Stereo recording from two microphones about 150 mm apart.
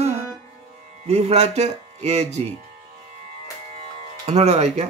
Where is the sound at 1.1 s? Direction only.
45° right (ahead or behind).